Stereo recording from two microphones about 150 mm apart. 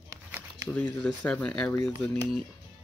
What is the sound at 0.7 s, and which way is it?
Speech, 10° left (ahead or behind).